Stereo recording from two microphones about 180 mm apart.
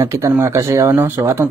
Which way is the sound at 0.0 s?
15° right (ahead or behind).